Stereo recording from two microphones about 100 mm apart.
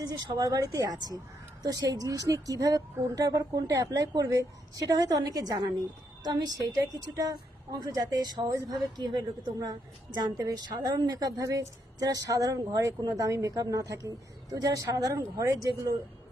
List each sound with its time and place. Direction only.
0.0 s a woman's voice: 45° right (ahead or behind)